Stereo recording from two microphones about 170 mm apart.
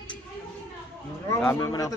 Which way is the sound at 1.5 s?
20° left (ahead or behind).